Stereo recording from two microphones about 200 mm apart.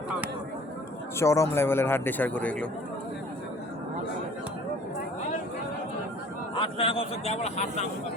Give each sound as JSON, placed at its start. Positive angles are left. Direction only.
{"t": 1.2, "sound": "speech", "side_deg": 15}
{"t": 6.6, "sound": "a man's voice", "side_deg": 25}